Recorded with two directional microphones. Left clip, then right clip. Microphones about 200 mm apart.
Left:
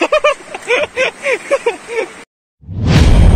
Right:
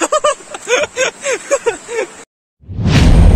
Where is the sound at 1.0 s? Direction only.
25° right (ahead or behind).